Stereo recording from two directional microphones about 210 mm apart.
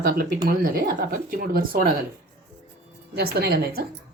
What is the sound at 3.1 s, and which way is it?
Speech, 50° right (ahead or behind).